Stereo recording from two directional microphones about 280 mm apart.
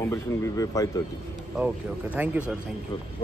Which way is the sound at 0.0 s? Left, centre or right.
Centre.